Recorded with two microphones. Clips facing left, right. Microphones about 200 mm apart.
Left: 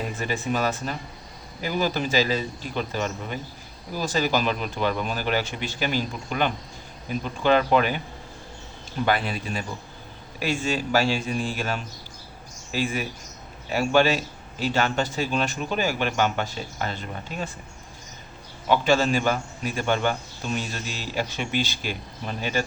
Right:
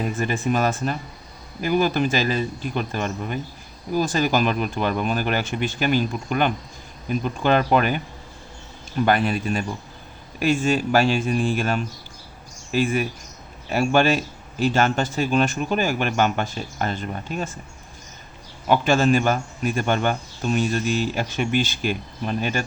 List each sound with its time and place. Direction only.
0.2 s speech: 50° right (ahead or behind)
9.0 s speech: 50° right (ahead or behind)
18.7 s speech: 50° right (ahead or behind)